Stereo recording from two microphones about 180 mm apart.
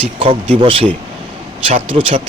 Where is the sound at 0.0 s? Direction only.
30° right (ahead or behind).